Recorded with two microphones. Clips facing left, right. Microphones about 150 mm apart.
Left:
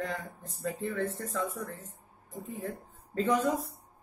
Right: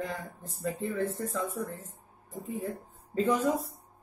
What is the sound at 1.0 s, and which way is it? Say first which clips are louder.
Speech: right 1 dB; 30° right (ahead or behind).